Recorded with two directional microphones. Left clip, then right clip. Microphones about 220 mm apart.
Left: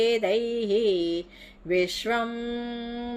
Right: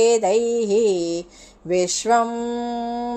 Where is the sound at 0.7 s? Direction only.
10° left (ahead or behind).